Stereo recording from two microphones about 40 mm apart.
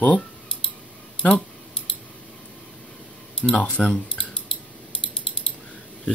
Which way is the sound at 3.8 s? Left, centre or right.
Centre.